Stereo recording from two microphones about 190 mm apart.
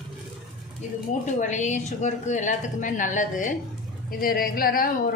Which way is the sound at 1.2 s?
40° left (ahead or behind).